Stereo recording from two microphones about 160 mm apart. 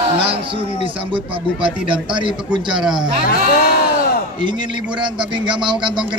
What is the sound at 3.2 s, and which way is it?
Speech, 70° left (ahead or behind).